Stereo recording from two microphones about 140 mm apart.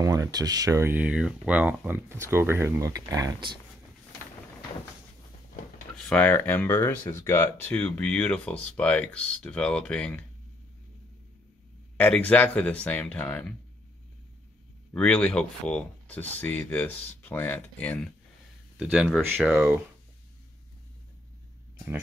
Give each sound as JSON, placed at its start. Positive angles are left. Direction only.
{"t": 0.0, "sound": "speech", "side_deg": -25}
{"t": 0.9, "sound": "speech", "side_deg": -10}
{"t": 5.9, "sound": "speech", "side_deg": 10}
{"t": 12.0, "sound": "speech", "side_deg": 10}
{"t": 15.0, "sound": "speech", "side_deg": 10}
{"t": 18.8, "sound": "speech", "side_deg": -5}